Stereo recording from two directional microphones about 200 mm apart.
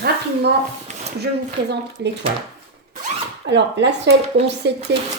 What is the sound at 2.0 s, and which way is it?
Speech, 60° right (ahead or behind).